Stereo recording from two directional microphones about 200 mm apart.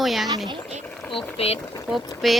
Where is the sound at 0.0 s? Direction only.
Centre (ahead or behind).